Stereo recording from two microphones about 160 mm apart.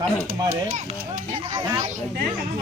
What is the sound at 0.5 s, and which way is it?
Speech, 55° right (ahead or behind).